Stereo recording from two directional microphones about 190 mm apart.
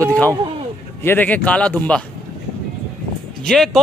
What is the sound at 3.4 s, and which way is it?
Speech, centre (ahead or behind).